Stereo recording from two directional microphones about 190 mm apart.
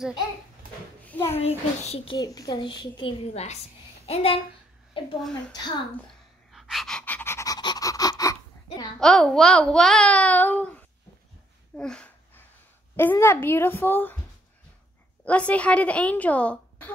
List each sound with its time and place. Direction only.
1.0 s a sound: 10° left (ahead or behind)
1.4 s a child's voice: 35° left (ahead or behind)
2.1 s a child's voice: 20° left (ahead or behind)
6.5 s pant: centre (ahead or behind); by 8.8 s 20° left (ahead or behind)
9.0 s a child's voice: 5° left (ahead or behind)
15.2 s a woman's voice: 5° left (ahead or behind)